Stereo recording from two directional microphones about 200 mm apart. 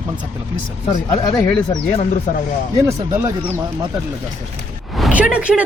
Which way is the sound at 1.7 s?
30° left (ahead or behind).